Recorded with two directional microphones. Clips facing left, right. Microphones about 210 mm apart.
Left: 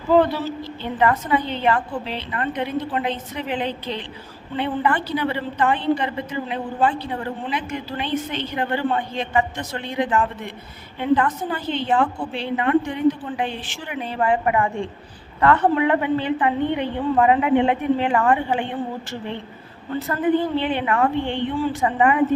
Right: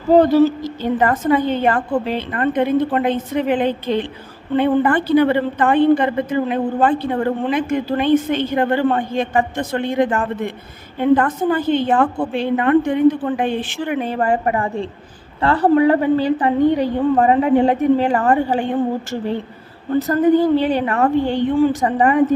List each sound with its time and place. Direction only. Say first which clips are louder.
0.1 s a woman's voice: right 7 dB; 45° right (ahead or behind)